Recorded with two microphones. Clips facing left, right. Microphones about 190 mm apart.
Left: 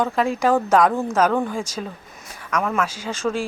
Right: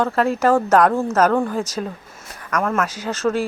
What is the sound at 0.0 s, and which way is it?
Speech, centre (ahead or behind).